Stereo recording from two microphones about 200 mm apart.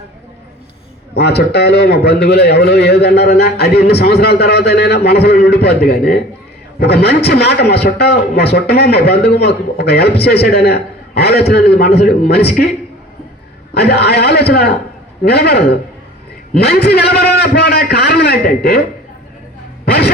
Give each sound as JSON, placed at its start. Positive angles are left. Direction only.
{"t": 1.1, "sound": "a man's voice", "side_deg": 55}
{"t": 13.7, "sound": "a man's voice", "side_deg": 55}
{"t": 19.8, "sound": "music", "side_deg": 55}